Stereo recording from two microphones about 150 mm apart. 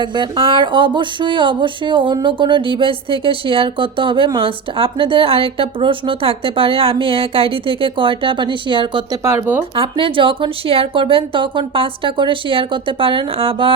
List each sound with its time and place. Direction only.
0.0 s speech: 30° right (ahead or behind)
9.2 s speech: 15° right (ahead or behind)
9.7 s speech: 35° right (ahead or behind)